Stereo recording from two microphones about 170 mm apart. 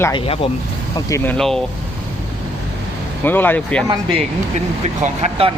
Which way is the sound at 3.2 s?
10° left (ahead or behind).